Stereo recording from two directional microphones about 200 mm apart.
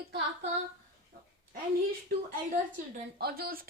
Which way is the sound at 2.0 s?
45° right (ahead or behind).